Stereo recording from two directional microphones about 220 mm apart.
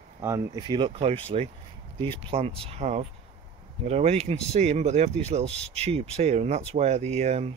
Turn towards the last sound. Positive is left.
turn(degrees=-30)  # may be behind; listen again after turning